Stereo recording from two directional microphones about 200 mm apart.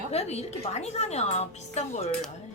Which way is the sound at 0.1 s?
30° left (ahead or behind).